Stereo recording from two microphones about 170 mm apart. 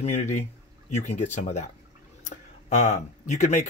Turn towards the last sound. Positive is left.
turn(degrees=45)  # may be behind; listen again after turning